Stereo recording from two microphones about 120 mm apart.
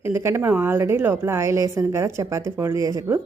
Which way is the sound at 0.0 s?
20° right (ahead or behind).